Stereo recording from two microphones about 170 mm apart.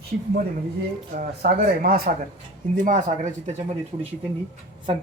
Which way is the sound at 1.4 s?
65° right (ahead or behind).